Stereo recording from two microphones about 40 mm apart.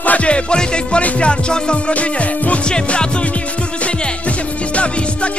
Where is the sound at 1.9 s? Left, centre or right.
Left.